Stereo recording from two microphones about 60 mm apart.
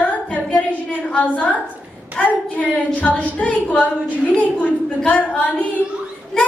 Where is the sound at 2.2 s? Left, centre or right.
Left.